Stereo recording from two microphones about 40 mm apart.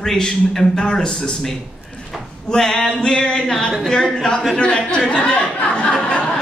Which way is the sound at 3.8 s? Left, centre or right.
Centre.